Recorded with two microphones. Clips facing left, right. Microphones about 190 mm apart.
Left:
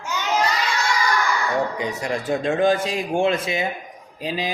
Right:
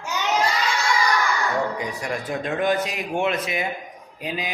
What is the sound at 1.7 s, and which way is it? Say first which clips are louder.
A man's voice: left 3 dB; 25° left (ahead or behind).